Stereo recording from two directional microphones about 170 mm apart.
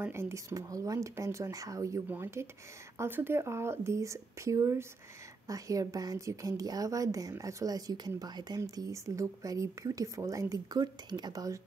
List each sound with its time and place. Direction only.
0.0 s a woman's voice: 15° right (ahead or behind)